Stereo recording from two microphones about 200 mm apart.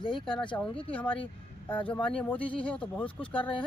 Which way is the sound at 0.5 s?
5° left (ahead or behind).